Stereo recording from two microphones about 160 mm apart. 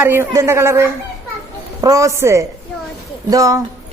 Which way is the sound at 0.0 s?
15° right (ahead or behind).